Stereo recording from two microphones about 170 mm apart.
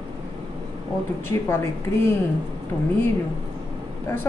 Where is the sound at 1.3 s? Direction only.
20° left (ahead or behind).